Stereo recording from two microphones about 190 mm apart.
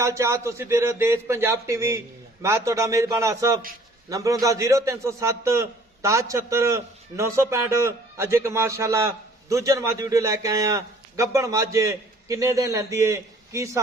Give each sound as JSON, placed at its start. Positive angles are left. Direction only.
{"t": 0.0, "sound": "a man's voice", "side_deg": -15}